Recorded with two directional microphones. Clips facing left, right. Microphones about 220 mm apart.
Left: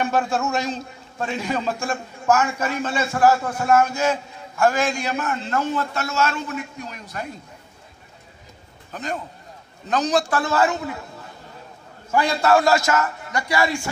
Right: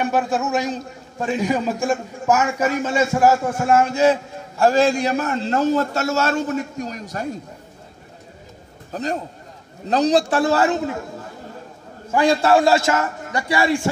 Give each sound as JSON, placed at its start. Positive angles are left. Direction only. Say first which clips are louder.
{"t": 0.0, "sound": "a man's voice", "louder": "right 2 dB", "side_deg": -15}
{"t": 8.9, "sound": "a man's voice", "louder": "right 5 dB", "side_deg": -35}
{"t": 12.3, "sound": "a man's voice", "louder": "right 3 dB", "side_deg": -30}